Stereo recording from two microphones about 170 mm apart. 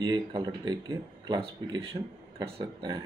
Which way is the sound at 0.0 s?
25° right (ahead or behind).